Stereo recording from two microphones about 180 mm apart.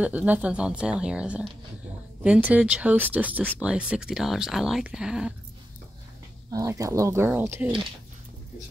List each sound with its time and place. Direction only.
0.0 s speech: 10° right (ahead or behind)
6.5 s speech: 20° right (ahead or behind)